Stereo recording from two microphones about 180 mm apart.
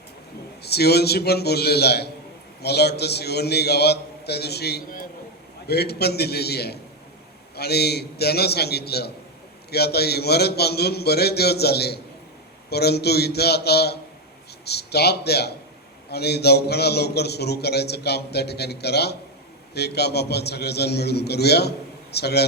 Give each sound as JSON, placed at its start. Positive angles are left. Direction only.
{"t": 0.6, "sound": "a man's voice", "side_deg": 65}